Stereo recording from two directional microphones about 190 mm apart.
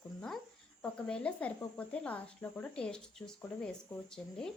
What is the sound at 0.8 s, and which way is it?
Speech, 5° left (ahead or behind).